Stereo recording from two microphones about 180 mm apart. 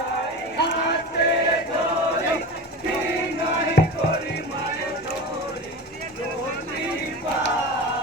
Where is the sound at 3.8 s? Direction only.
60° left (ahead or behind).